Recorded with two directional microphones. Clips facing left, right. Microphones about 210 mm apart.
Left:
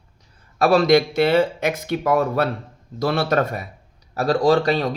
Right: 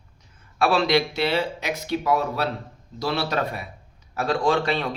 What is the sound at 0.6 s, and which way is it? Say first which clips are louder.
Speech: left 5 dB; 45° left (ahead or behind).